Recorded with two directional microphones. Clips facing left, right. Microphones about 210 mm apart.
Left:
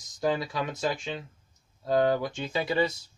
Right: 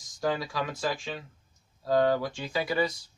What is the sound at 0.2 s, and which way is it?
Speech, 20° left (ahead or behind).